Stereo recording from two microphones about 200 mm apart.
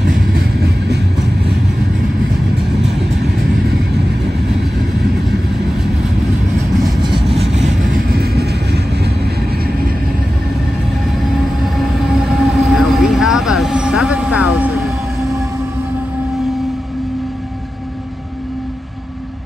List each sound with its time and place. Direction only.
0.1 s vehicle: 50° right (ahead or behind)
6.8 s vehicle: 25° right (ahead or behind); by 9.3 s 55° right (ahead or behind)
11.7 s train: centre (ahead or behind)